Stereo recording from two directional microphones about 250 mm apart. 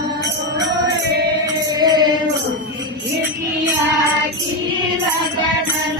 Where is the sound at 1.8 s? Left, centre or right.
Centre.